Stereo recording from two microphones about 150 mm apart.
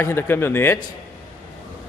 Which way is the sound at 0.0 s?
15° left (ahead or behind).